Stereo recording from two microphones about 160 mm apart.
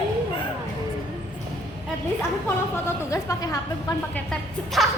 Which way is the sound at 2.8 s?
20° left (ahead or behind).